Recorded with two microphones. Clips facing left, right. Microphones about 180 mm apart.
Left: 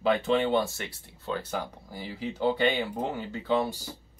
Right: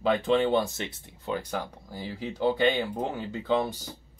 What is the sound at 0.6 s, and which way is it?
Speech, 20° right (ahead or behind).